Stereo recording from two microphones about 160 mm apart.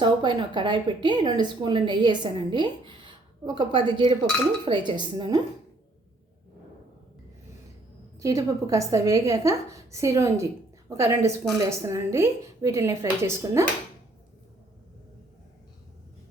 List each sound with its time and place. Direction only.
0.0 s a woman's voice: 30° right (ahead or behind)
8.2 s a woman's voice: 20° right (ahead or behind)